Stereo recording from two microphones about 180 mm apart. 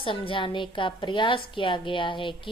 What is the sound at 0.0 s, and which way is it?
A woman's voice, 30° left (ahead or behind).